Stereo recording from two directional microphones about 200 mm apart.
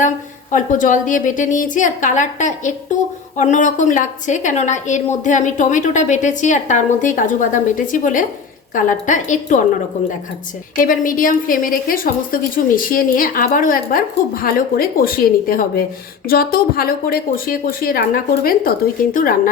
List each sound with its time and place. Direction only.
0.5 s a woman's voice: 40° left (ahead or behind)